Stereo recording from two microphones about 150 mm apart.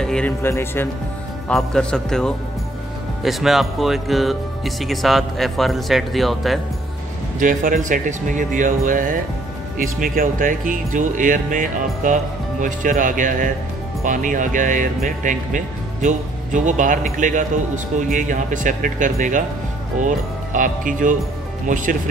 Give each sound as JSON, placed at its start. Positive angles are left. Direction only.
{"t": 0.0, "sound": "music", "side_deg": 5}
{"t": 0.4, "sound": "speech", "side_deg": 15}
{"t": 1.5, "sound": "speech", "side_deg": 5}
{"t": 7.3, "sound": "speech", "side_deg": -65}